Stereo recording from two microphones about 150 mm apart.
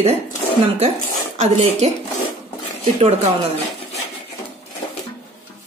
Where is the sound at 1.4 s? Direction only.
45° right (ahead or behind).